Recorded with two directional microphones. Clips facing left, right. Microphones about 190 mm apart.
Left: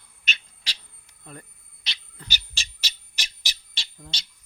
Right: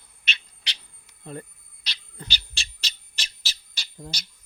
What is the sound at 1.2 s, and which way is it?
Speech, 30° right (ahead or behind).